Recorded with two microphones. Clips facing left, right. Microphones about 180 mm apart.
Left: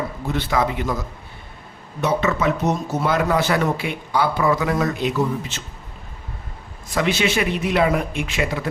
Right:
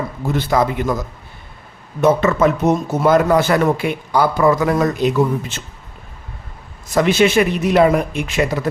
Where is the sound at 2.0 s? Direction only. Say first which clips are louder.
Right 6 dB; 50° right (ahead or behind).